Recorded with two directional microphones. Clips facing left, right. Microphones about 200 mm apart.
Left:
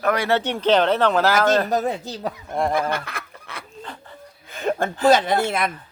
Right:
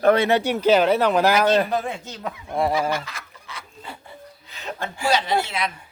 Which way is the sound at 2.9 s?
60° left (ahead or behind).